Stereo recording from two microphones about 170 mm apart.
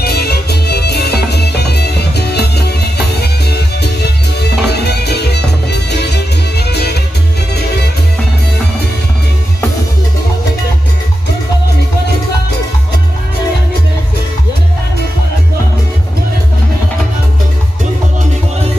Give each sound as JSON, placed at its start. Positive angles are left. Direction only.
{"t": 0.0, "sound": "music", "side_deg": 65}